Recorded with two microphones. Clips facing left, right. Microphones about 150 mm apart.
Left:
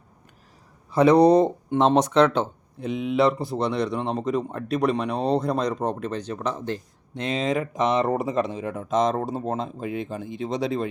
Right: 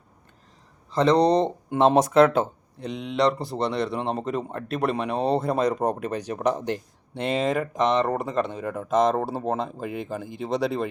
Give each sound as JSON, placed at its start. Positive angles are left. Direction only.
{"t": 0.9, "sound": "speech", "side_deg": 10}
{"t": 1.7, "sound": "speech", "side_deg": -5}
{"t": 7.3, "sound": "speech", "side_deg": -5}